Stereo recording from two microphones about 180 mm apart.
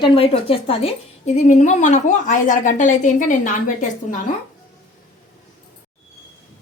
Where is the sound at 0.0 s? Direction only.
30° left (ahead or behind); by 4.2 s 45° left (ahead or behind).